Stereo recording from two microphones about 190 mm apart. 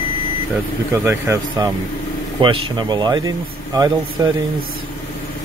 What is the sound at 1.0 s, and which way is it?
Speech, 15° right (ahead or behind).